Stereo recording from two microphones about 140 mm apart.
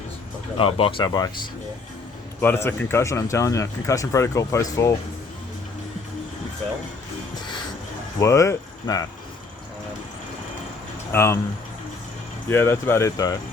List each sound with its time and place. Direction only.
0.5 s speech: 40° left (ahead or behind)
2.4 s speech: 15° left (ahead or behind)
8.2 s speech: 25° left (ahead or behind)
11.1 s speech: 20° left (ahead or behind)
12.5 s speech: 15° left (ahead or behind)